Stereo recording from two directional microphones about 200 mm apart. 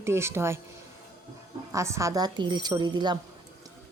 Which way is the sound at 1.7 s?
15° right (ahead or behind).